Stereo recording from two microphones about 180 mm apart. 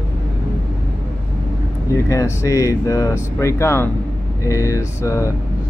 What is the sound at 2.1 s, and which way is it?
Speech, 15° left (ahead or behind).